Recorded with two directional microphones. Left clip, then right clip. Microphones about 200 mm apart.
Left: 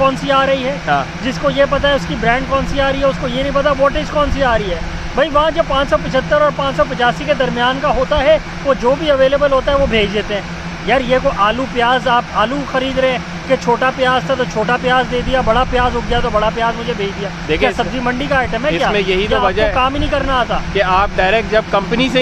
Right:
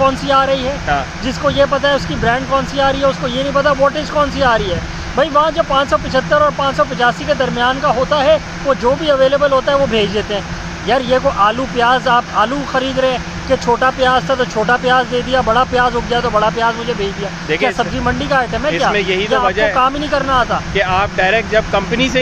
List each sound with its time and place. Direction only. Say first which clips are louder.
0.0 s speech: even; centre (ahead or behind)
17.5 s speech: left 1 dB; 20° left (ahead or behind)
17.7 s speech: right 1 dB; centre (ahead or behind)
18.9 s speech: even; 20° left (ahead or behind)
19.7 s speech: right 1 dB; centre (ahead or behind)
20.7 s speech: left 3 dB; 15° left (ahead or behind)